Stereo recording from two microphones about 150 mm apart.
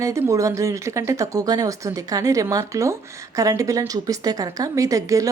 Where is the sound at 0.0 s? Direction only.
20° right (ahead or behind).